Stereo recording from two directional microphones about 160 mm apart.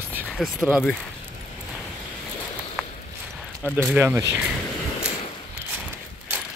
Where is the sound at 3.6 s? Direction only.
5° right (ahead or behind).